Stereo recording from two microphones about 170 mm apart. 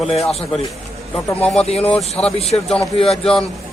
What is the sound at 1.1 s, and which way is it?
Speech, 5° left (ahead or behind).